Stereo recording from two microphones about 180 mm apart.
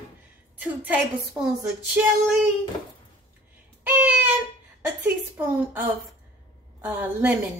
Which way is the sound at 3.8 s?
10° right (ahead or behind).